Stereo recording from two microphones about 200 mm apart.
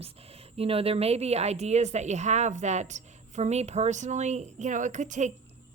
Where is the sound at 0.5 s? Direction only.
30° right (ahead or behind).